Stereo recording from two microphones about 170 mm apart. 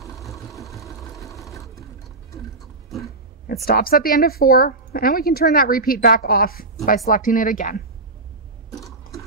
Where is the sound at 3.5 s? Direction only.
60° left (ahead or behind).